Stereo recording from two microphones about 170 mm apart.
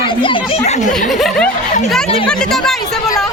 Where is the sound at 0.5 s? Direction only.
45° left (ahead or behind).